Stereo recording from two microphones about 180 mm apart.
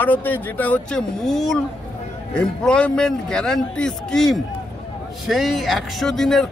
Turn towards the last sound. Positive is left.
turn(degrees=0)  # may be behind; listen again after turning